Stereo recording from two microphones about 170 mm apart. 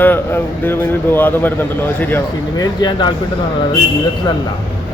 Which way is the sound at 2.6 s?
25° left (ahead or behind).